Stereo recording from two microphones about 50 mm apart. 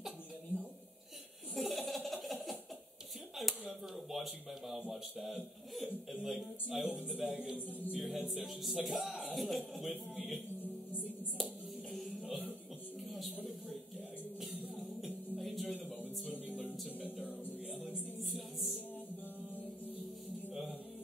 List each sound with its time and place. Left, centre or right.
1.5 s laughter: centre
3.3 s a sound: centre
4.9 s a man's voice: centre
7.5 s music: left
8.0 s speech: centre
11.9 s music: centre
13.1 s a sound: centre
15.3 s music: centre
16.4 s music: right